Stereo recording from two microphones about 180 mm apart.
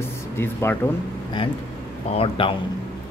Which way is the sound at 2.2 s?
30° left (ahead or behind).